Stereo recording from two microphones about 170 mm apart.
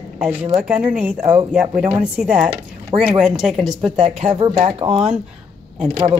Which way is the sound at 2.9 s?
25° right (ahead or behind).